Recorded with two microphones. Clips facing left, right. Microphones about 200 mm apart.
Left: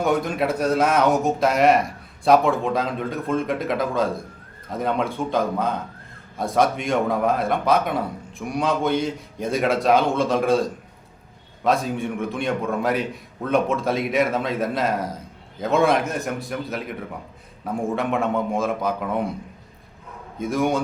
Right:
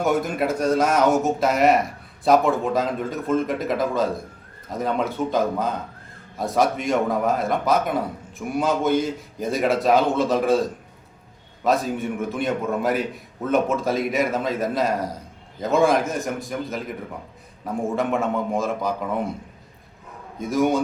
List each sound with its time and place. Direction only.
0.0 s a man's voice: centre (ahead or behind)
17.9 s a man's voice: centre (ahead or behind)
20.4 s a man's voice: centre (ahead or behind)